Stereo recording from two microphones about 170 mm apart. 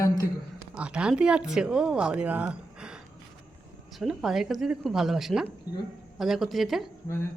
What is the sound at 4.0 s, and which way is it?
Speech, centre (ahead or behind).